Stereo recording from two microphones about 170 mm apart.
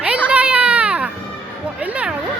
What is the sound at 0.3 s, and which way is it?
Baby cry, 5° right (ahead or behind).